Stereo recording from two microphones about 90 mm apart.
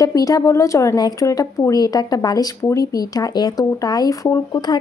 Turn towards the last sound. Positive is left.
turn(degrees=45)  # may be behind; listen again after turning